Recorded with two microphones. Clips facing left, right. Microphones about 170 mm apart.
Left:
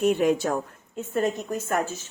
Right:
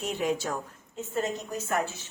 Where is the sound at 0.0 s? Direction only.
55° left (ahead or behind).